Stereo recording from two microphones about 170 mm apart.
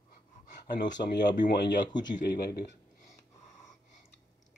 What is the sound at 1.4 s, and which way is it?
Speech, 90° left.